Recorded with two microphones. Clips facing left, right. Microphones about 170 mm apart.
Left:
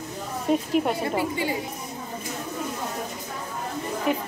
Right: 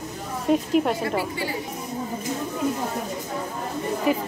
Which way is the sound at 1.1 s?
20° left (ahead or behind).